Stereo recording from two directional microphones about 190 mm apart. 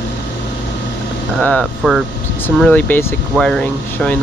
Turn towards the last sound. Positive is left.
turn(degrees=5)  # may be behind; listen again after turning